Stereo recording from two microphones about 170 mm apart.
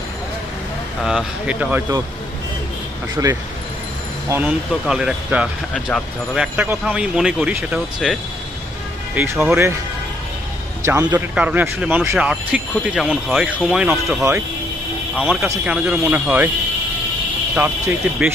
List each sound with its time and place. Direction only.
1.0 s speech: 5° right (ahead or behind)
3.2 s speech: 15° right (ahead or behind)
10.8 s speech: 20° right (ahead or behind)
12.9 s speech: 5° left (ahead or behind)
15.6 s speech: 5° right (ahead or behind)
17.6 s speech: 10° right (ahead or behind)